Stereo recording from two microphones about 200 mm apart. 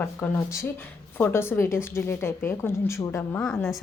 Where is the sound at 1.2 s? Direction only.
10° left (ahead or behind).